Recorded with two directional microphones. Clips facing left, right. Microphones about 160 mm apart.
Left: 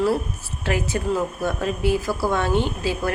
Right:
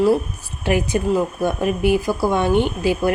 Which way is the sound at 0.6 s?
15° right (ahead or behind).